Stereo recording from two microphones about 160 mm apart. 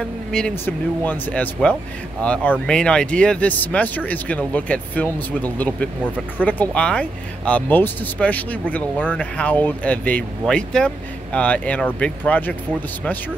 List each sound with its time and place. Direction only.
0.3 s speech: 5° left (ahead or behind)